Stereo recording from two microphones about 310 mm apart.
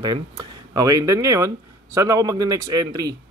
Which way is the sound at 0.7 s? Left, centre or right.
Centre.